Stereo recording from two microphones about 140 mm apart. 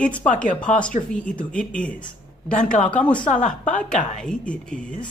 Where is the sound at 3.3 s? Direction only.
65° left (ahead or behind).